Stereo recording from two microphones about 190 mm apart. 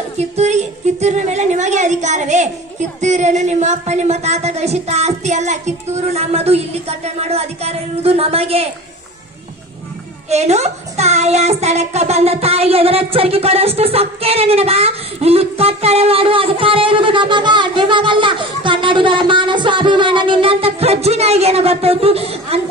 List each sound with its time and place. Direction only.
0.2 s speech: 35° right (ahead or behind)
10.3 s speech: 35° right (ahead or behind)